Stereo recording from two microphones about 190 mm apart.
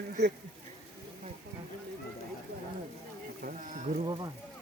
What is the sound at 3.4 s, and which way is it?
Speech, 45° right (ahead or behind).